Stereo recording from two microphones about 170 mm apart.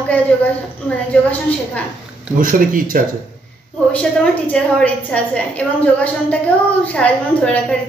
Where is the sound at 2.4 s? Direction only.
55° right (ahead or behind).